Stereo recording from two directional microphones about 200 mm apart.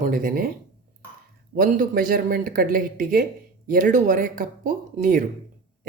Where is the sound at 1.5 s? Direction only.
45° right (ahead or behind).